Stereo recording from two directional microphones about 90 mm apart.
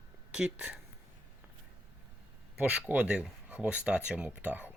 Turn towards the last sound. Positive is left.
turn(degrees=-15)  # may be behind; listen again after turning